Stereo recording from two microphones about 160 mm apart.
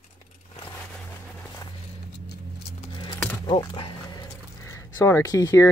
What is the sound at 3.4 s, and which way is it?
Dog, 30° left (ahead or behind).